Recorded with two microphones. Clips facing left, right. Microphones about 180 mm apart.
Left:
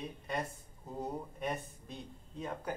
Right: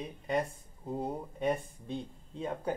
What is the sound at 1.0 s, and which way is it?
Speech, 30° right (ahead or behind).